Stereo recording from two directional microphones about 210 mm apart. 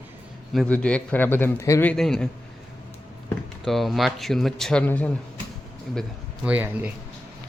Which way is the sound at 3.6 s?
Centre (ahead or behind).